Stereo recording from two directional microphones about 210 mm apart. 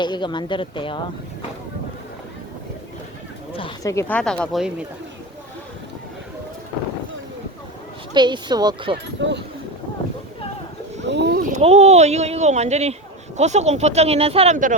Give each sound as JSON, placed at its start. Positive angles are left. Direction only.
{"t": 0.0, "sound": "speech", "side_deg": 20}
{"t": 3.5, "sound": "speech", "side_deg": 20}
{"t": 4.2, "sound": "speech", "side_deg": 5}
{"t": 8.1, "sound": "speech", "side_deg": -20}
{"t": 9.2, "sound": "speech", "side_deg": -60}
{"t": 11.0, "sound": "a sound", "side_deg": -55}
{"t": 11.5, "sound": "speech", "side_deg": -30}